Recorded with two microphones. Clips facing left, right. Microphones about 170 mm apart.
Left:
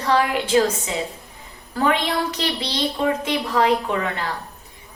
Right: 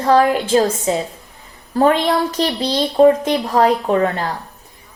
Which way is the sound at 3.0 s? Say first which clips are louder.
Right 12 dB; 40° right (ahead or behind).